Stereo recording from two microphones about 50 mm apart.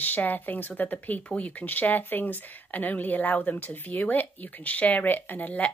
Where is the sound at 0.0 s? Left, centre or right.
Left.